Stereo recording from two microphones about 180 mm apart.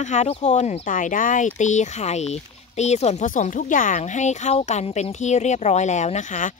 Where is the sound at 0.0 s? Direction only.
40° left (ahead or behind).